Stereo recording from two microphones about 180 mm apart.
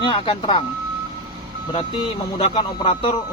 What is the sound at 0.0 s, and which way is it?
Speech, 25° left (ahead or behind).